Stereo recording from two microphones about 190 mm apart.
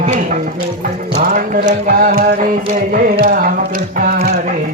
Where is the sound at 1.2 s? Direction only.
45° right (ahead or behind).